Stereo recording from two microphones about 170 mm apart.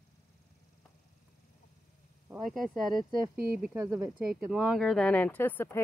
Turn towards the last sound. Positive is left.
turn(degrees=10)  # may be behind; listen again after turning